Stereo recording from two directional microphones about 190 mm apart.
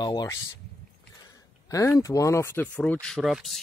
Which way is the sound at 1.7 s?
15° left (ahead or behind).